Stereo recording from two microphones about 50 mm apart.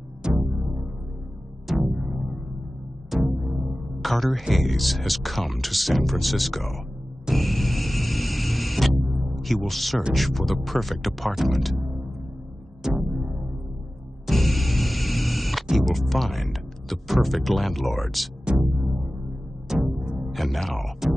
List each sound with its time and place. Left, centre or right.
0.2 s music: centre
1.9 s music: centre
4.0 s speech: centre
7.3 s music: centre
10.1 s speech: centre
12.8 s music: centre
14.2 s music: centre
15.7 s speech: centre
18.4 s music: centre
20.3 s music: centre